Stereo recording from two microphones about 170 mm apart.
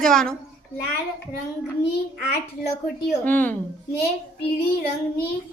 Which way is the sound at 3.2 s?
10° left (ahead or behind).